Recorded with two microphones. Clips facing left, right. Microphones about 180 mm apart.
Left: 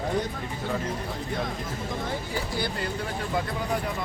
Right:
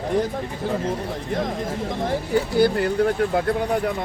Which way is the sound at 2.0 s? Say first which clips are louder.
Right 9 dB; 60° right (ahead or behind).